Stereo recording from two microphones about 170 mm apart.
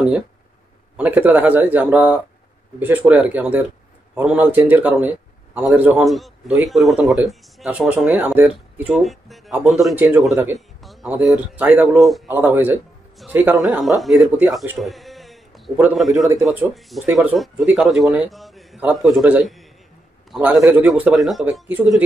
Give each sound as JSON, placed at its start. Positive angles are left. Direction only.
{"t": 0.9, "sound": "a man's voice", "side_deg": -10}
{"t": 6.0, "sound": "a man's voice", "side_deg": 0}
{"t": 9.9, "sound": "speech", "side_deg": -10}
{"t": 10.8, "sound": "a man's voice", "side_deg": 0}
{"t": 13.6, "sound": "a man's voice", "side_deg": 0}
{"t": 14.8, "sound": "a sound", "side_deg": 0}
{"t": 15.8, "sound": "a man's voice", "side_deg": 0}